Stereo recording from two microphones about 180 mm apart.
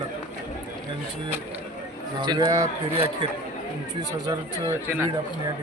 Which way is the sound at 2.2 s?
25° right (ahead or behind).